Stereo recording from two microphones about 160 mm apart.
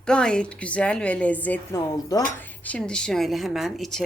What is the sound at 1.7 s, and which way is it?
Speech, 20° left (ahead or behind).